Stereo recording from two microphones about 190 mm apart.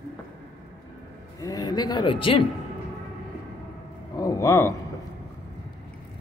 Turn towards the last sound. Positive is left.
turn(degrees=15)  # may be behind; listen again after turning